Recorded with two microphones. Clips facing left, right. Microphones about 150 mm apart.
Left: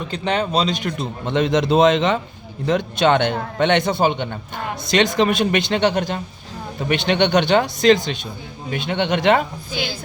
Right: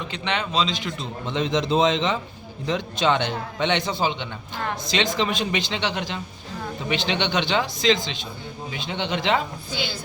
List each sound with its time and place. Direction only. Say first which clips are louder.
0.1 s a man's voice: left 7 dB; 40° left (ahead or behind); by 9.4 s 55° left (ahead or behind)